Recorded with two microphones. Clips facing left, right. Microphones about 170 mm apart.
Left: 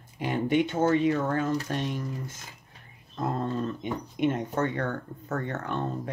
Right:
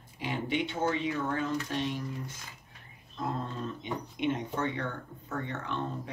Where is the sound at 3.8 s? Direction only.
50° left (ahead or behind).